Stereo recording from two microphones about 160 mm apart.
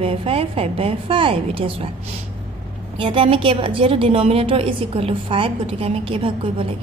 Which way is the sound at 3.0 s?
30° right (ahead or behind).